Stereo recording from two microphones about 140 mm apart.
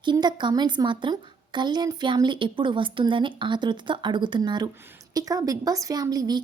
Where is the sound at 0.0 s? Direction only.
30° right (ahead or behind).